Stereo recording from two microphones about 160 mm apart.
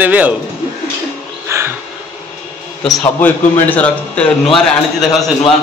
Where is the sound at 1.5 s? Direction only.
15° right (ahead or behind).